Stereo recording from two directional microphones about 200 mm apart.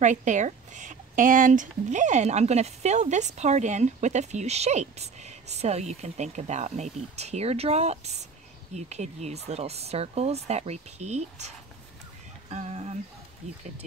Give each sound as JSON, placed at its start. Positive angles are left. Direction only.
{"t": 0.0, "sound": "speech", "side_deg": -40}